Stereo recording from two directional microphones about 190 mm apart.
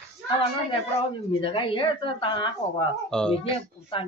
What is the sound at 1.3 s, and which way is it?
Speech, 25° left (ahead or behind).